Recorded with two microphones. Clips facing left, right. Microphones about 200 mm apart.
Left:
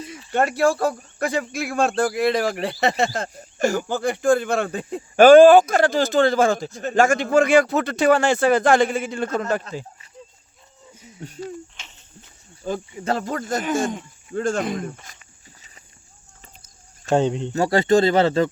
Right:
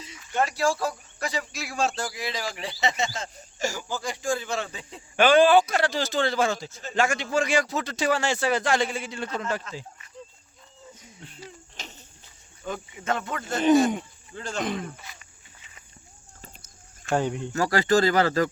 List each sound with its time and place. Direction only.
0.3 s speech: 55° left (ahead or behind)
11.2 s speech: 45° left (ahead or behind)
11.8 s a sound: 35° right (ahead or behind)
12.6 s speech: 35° left (ahead or behind)
14.3 s speech: 50° left (ahead or behind)
17.2 s speech: 25° left (ahead or behind)